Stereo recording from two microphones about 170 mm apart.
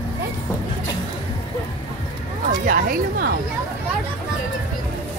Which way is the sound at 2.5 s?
55° right (ahead or behind).